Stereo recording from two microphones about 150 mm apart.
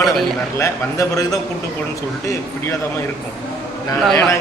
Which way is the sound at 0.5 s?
20° left (ahead or behind).